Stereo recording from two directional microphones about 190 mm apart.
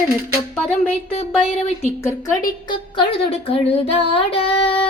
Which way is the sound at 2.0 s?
15° left (ahead or behind).